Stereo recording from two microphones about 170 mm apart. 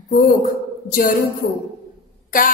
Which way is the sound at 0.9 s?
55° left (ahead or behind).